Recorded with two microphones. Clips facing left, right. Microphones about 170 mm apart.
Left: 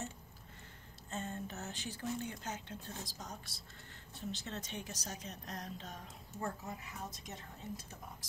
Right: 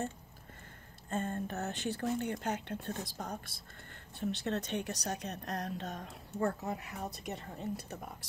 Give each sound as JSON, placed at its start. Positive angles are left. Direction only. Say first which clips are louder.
{"t": 1.1, "sound": "a woman's voice", "louder": "right 7 dB", "side_deg": -50}